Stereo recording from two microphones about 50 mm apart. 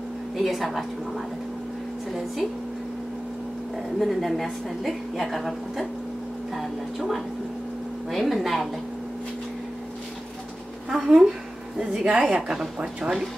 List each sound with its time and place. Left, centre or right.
0.4 s a woman's voice: centre
4.0 s a woman's voice: centre
11.1 s a woman's voice: centre
12.4 s speech: centre